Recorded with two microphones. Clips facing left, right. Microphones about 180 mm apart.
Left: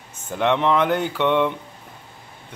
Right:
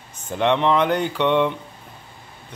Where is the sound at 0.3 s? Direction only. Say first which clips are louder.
Right 1 dB; 5° left (ahead or behind).